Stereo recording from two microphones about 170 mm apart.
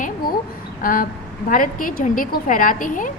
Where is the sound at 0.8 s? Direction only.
55° left (ahead or behind).